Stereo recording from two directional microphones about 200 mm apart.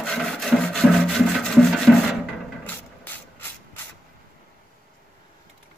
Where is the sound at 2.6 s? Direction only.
10° left (ahead or behind).